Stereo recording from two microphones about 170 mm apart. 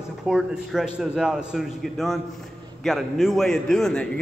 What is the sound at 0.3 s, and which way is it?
A man's voice, 5° right (ahead or behind).